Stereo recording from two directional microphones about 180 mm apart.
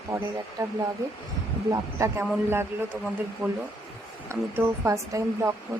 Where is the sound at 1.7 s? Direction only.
15° right (ahead or behind).